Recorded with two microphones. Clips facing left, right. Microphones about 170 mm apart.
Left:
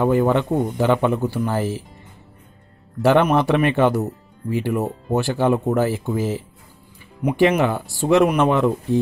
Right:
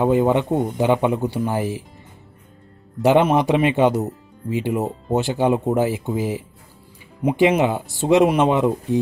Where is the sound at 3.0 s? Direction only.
20° right (ahead or behind).